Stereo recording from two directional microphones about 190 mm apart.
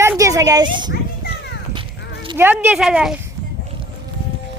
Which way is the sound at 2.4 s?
10° right (ahead or behind).